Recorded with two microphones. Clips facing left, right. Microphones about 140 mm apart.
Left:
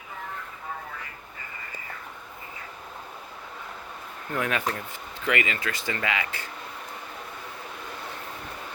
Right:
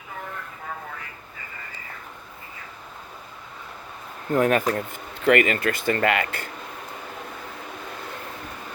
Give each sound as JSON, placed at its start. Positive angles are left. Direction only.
{"t": 4.3, "sound": "speech", "side_deg": -45}